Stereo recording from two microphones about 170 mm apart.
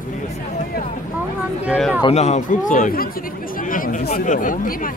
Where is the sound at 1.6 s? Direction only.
5° right (ahead or behind).